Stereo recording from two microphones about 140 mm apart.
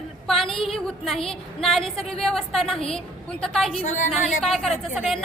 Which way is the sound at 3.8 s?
65° left (ahead or behind).